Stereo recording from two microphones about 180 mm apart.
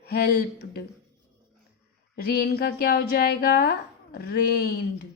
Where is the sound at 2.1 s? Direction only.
60° left (ahead or behind).